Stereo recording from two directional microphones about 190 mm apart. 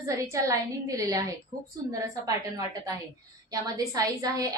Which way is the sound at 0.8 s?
20° right (ahead or behind).